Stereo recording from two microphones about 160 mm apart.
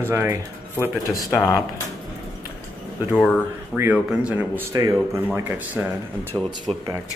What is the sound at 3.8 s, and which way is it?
Speech, 10° right (ahead or behind).